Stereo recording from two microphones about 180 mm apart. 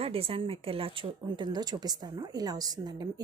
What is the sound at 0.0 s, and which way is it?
A woman's voice, 30° right (ahead or behind).